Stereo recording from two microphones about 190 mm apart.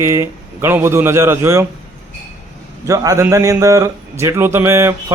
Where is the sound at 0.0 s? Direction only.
15° right (ahead or behind).